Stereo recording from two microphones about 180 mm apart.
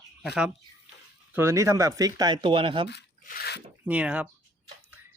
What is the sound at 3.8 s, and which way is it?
Speech, 5° right (ahead or behind).